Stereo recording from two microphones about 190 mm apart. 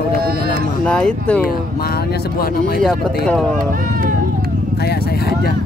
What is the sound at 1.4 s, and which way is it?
Speech, 55° left (ahead or behind).